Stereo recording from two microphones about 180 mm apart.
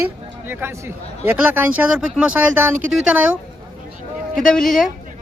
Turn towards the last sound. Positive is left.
turn(degrees=0)  # may be behind; listen again after turning